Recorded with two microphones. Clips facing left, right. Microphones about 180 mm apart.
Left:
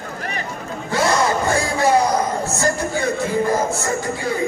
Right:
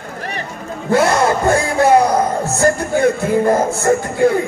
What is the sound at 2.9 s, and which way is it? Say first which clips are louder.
Music: right 8 dB; 55° right (ahead or behind).